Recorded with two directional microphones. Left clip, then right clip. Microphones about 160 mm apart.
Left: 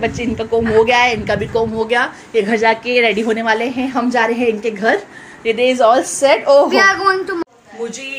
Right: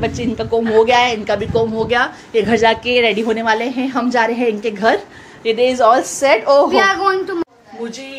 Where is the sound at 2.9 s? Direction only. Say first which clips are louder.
Left 1 dB; centre (ahead or behind).